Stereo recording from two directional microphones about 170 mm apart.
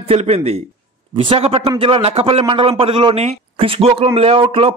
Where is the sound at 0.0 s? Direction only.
35° right (ahead or behind).